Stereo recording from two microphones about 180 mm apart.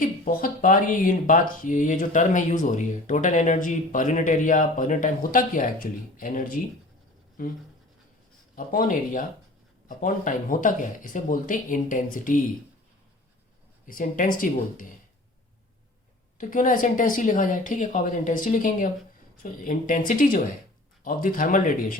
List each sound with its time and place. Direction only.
0.0 s speech: 50° left (ahead or behind)
8.5 s speech: 50° left (ahead or behind)
13.8 s speech: 50° left (ahead or behind)
16.4 s speech: 45° left (ahead or behind)